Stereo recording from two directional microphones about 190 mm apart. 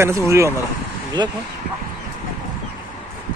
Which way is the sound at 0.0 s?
15° right (ahead or behind).